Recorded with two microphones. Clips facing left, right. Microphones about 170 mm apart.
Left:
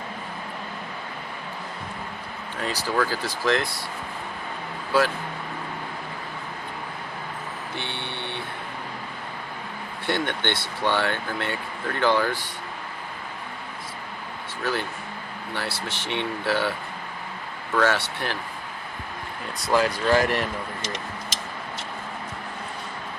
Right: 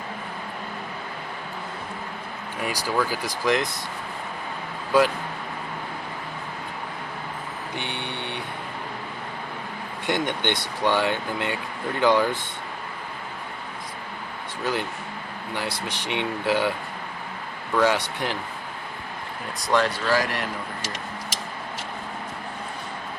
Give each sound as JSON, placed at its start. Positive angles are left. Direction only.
{"t": 2.6, "sound": "speech", "side_deg": -10}
{"t": 4.9, "sound": "speech", "side_deg": -15}
{"t": 7.8, "sound": "vehicle", "side_deg": -15}
{"t": 10.1, "sound": "speech", "side_deg": -15}
{"t": 14.6, "sound": "speech", "side_deg": -15}
{"t": 17.7, "sound": "speech", "side_deg": -15}
{"t": 20.1, "sound": "speech", "side_deg": 20}